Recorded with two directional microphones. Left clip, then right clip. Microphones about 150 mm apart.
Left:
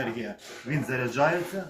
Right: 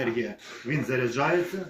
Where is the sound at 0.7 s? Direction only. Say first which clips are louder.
Right 2 dB; 5° left (ahead or behind).